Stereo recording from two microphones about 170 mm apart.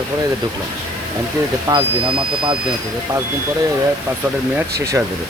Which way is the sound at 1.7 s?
30° right (ahead or behind).